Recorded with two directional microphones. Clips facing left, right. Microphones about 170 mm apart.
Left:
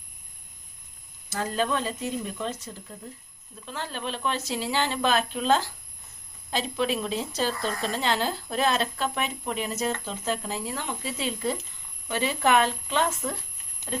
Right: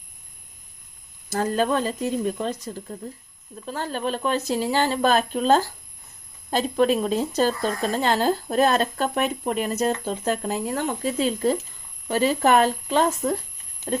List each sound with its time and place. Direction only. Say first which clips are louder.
1.3 s a woman's voice: right 5 dB; 45° right (ahead or behind)
3.7 s a woman's voice: right 6 dB; 45° right (ahead or behind)